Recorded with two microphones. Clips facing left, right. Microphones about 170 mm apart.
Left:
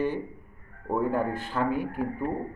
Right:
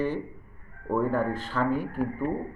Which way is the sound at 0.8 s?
15° left (ahead or behind).